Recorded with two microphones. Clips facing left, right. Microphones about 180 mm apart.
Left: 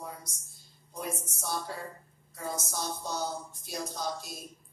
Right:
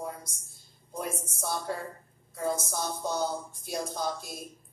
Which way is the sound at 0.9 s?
50° right (ahead or behind).